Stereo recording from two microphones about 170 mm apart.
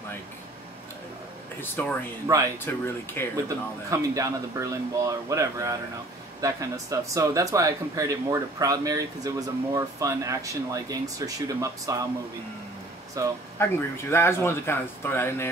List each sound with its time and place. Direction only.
1.6 s speech: 10° left (ahead or behind)
2.3 s speech: 20° right (ahead or behind)
2.7 s speech: 15° left (ahead or behind)
3.4 s speech: 20° right (ahead or behind)
13.2 s speech: 20° right (ahead or behind)
13.6 s speech: 15° left (ahead or behind)